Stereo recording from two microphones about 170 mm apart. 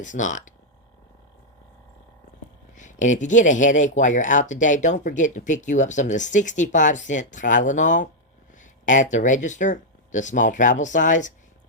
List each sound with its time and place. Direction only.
0.0 s speech: 45° left (ahead or behind)
2.7 s speech: 45° left (ahead or behind)